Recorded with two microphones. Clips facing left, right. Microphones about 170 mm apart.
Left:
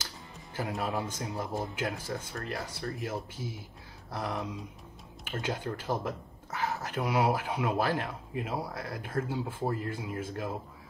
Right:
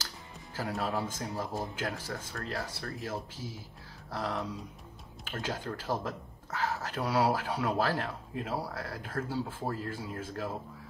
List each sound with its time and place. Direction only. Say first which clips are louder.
0.6 s speech: even; 20° left (ahead or behind)